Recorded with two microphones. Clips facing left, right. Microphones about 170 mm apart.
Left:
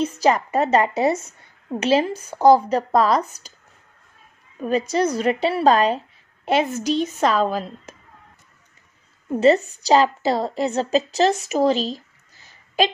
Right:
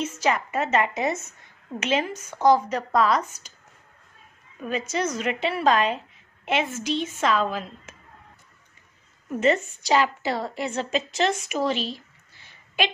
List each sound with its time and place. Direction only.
0.0 s a woman's voice: 35° left (ahead or behind)
4.6 s a woman's voice: 35° left (ahead or behind)
9.3 s a woman's voice: 35° left (ahead or behind)